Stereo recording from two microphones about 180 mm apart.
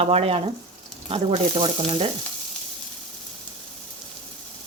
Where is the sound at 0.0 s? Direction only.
35° right (ahead or behind).